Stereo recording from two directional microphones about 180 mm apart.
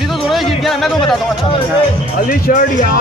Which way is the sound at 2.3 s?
50° left (ahead or behind).